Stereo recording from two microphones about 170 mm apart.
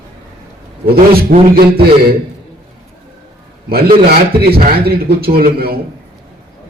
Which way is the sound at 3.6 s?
65° right (ahead or behind).